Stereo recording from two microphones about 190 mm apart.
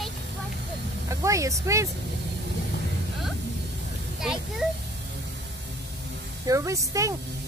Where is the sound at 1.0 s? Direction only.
15° right (ahead or behind).